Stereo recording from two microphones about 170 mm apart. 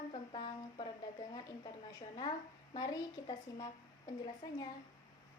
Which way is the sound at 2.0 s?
30° left (ahead or behind).